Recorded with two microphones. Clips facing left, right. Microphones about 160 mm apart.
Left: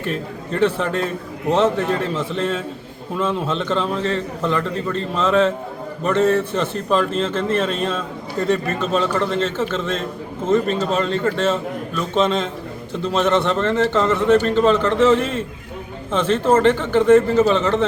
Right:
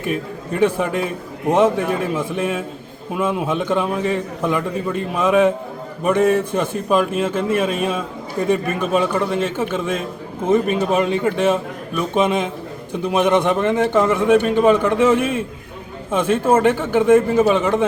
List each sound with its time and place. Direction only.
0.0 s a man's voice: 10° right (ahead or behind)